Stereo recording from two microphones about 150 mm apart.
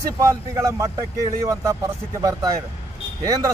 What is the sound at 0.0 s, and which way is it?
A man's voice, 20° right (ahead or behind).